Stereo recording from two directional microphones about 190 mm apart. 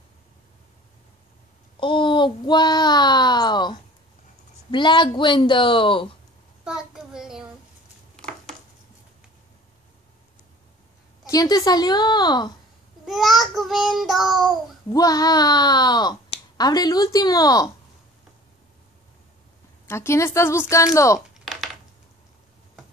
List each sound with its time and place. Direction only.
1.8 s a child's voice: 25° left (ahead or behind)
6.6 s child singing: 5° right (ahead or behind)
8.2 s a sound: 5° left (ahead or behind)
11.2 s speech: 20° left (ahead or behind)
13.0 s child singing: centre (ahead or behind)
14.9 s speech: 20° left (ahead or behind)
19.9 s speech: 15° left (ahead or behind)